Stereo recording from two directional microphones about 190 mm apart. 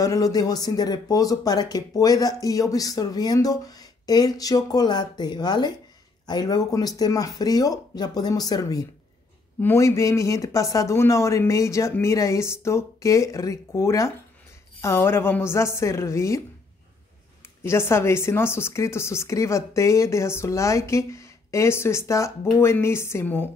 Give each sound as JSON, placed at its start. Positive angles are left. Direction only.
{"t": 0.0, "sound": "speech", "side_deg": 20}
{"t": 17.6, "sound": "speech", "side_deg": 15}